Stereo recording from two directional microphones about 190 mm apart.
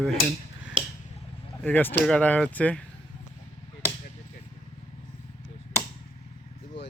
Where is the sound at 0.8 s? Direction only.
25° right (ahead or behind).